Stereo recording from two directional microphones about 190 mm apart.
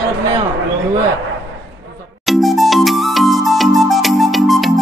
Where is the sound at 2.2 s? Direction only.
Centre (ahead or behind).